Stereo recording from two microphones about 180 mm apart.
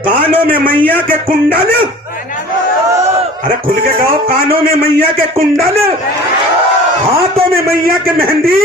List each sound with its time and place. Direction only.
3.4 s a man's voice: 55° right (ahead or behind)
7.5 s a man's voice: 55° right (ahead or behind)